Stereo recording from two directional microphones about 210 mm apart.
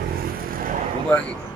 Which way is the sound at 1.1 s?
5° left (ahead or behind).